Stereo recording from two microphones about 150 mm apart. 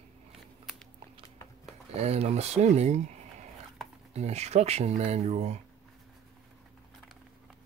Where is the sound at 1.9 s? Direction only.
45° right (ahead or behind).